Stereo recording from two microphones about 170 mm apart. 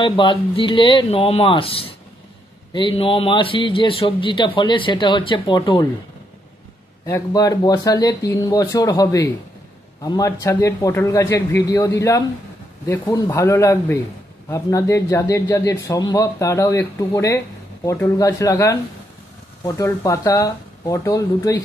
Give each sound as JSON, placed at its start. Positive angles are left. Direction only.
{"t": 0.0, "sound": "a man's voice", "side_deg": 30}
{"t": 7.1, "sound": "a man's voice", "side_deg": 20}